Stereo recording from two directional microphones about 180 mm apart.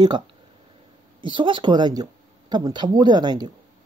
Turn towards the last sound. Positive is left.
turn(degrees=-25)  # may be behind; listen again after turning